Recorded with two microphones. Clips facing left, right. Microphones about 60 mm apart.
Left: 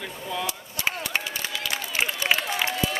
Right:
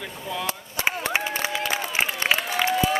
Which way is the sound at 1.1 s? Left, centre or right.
Centre.